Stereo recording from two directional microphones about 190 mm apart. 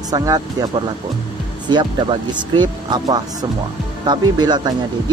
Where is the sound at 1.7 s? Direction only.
25° right (ahead or behind).